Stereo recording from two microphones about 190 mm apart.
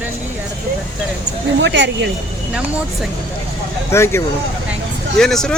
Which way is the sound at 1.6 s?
70° right (ahead or behind).